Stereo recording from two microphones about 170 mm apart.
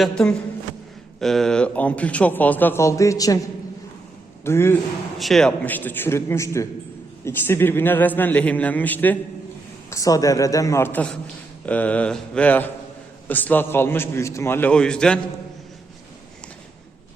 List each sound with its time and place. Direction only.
0.0 s a man's voice: 5° left (ahead or behind); by 3.4 s 20° left (ahead or behind)
4.4 s a man's voice: 15° left (ahead or behind)
5.1 s a man's voice: centre (ahead or behind)